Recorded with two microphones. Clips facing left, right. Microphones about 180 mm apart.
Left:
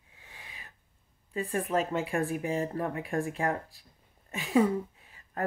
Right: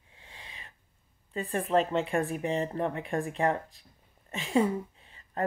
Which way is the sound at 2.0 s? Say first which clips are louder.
Right 1 dB; centre (ahead or behind).